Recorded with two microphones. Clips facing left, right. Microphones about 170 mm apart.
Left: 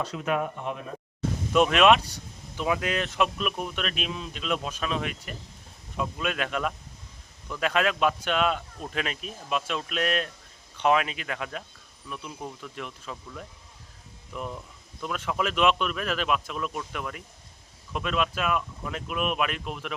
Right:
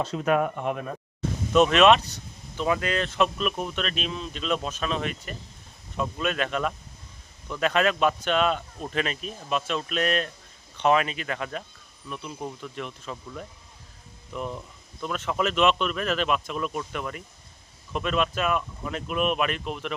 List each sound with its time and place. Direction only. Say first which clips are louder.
0.0 s speech: right 3 dB; 30° right (ahead or behind)
0.3 s speech: right 5 dB; 55° right (ahead or behind)
1.5 s speech: right 2 dB; 10° left (ahead or behind)